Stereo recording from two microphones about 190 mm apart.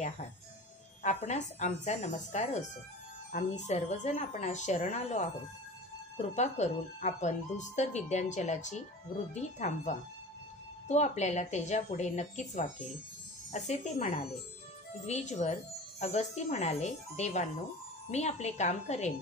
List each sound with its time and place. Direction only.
1.0 s speech: 35° left (ahead or behind)